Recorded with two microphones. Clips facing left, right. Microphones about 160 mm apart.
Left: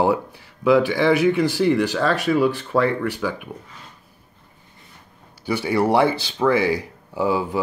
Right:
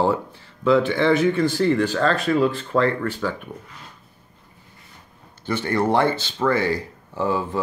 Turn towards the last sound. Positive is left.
turn(degrees=10)  # may be behind; listen again after turning